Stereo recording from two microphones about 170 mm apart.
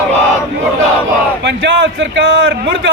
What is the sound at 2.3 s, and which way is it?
Speech, 90° right.